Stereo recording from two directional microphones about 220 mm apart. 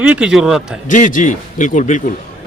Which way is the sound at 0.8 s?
35° left (ahead or behind).